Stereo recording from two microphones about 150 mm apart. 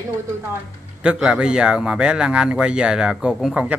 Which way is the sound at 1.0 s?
5° right (ahead or behind).